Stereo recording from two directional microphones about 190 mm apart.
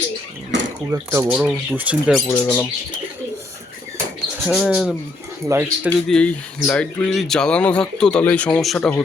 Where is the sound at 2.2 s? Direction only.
15° left (ahead or behind).